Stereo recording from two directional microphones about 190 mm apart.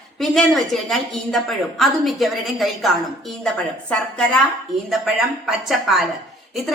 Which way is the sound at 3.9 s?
5° left (ahead or behind).